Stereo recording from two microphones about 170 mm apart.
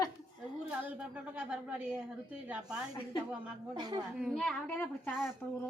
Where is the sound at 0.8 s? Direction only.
10° right (ahead or behind).